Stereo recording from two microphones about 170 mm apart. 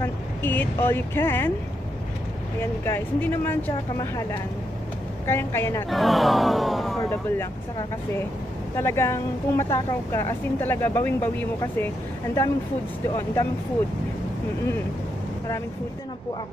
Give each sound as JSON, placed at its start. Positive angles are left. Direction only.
{"t": 0.0, "sound": "speech", "side_deg": 10}
{"t": 2.6, "sound": "a woman's voice", "side_deg": 15}
{"t": 5.9, "sound": "speech", "side_deg": 0}
{"t": 7.0, "sound": "speech", "side_deg": 15}
{"t": 8.7, "sound": "a woman's voice", "side_deg": 15}
{"t": 13.1, "sound": "a woman's voice", "side_deg": 15}